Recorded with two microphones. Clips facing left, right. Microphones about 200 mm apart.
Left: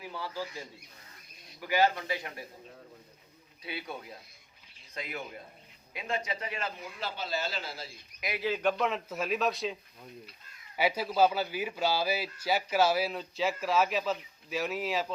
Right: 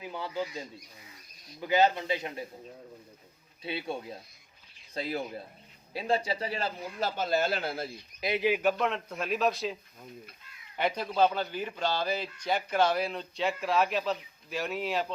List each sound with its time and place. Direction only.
0.0 s speech: 20° right (ahead or behind)
1.6 s a man's voice: 20° right (ahead or behind)
3.6 s a man's voice: 25° right (ahead or behind)
7.2 s a man's voice: 55° right (ahead or behind)
8.2 s a man's voice: 25° right (ahead or behind)
8.4 s a man's voice: 10° right (ahead or behind)
8.8 s a man's voice: centre (ahead or behind)
10.8 s a man's voice: 5° left (ahead or behind)